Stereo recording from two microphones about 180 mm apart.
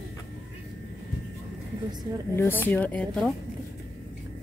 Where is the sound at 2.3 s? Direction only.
10° left (ahead or behind).